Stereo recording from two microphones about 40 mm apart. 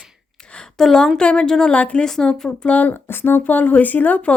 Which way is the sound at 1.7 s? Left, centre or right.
Left.